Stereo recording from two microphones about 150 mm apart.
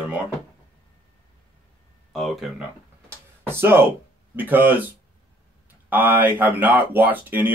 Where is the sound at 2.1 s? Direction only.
Centre (ahead or behind).